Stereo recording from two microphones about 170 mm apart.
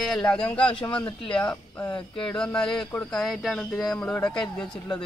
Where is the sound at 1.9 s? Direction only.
30° left (ahead or behind).